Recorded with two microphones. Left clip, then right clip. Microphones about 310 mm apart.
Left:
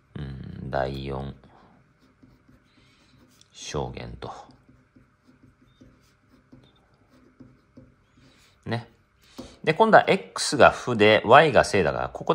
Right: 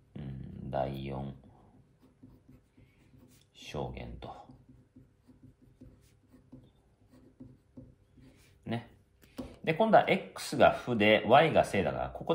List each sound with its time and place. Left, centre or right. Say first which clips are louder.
0.7 s speech: left 7 dB; left
3.5 s speech: left 8 dB; left
9.7 s speech: left 8 dB; left